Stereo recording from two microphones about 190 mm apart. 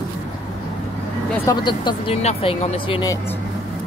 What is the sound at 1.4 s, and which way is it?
Speech, 25° left (ahead or behind).